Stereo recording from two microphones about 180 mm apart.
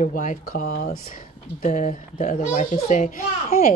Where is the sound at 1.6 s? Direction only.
45° left (ahead or behind).